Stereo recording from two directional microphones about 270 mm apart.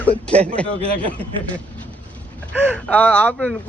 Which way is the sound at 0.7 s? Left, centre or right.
Right.